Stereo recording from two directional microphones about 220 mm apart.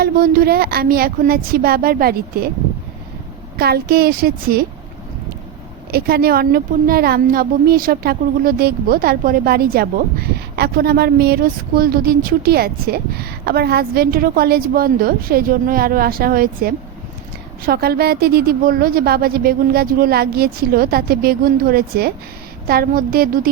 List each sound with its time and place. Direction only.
0.0 s a woman's voice: 45° right (ahead or behind)
3.6 s a woman's voice: 45° right (ahead or behind)
5.9 s a woman's voice: 45° right (ahead or behind)